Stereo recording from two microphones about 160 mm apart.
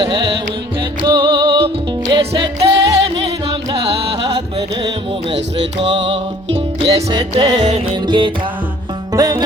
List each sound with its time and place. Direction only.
0.0 s music: 30° right (ahead or behind)
2.6 s music: 90° right
5.8 s music: 30° right (ahead or behind)
7.6 s music: 45° right (ahead or behind)
8.0 s music: 30° right (ahead or behind)